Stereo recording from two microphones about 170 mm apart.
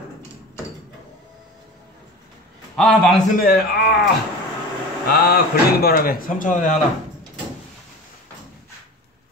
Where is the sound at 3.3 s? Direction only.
60° left (ahead or behind).